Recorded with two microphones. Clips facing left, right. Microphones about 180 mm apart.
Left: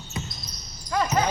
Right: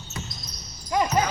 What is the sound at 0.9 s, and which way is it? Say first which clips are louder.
Dog: right 2 dB; 15° right (ahead or behind).